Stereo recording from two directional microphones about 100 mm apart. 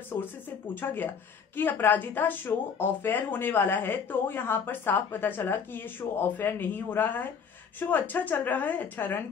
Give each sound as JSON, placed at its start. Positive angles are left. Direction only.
{"t": 0.1, "sound": "a woman's voice", "side_deg": 20}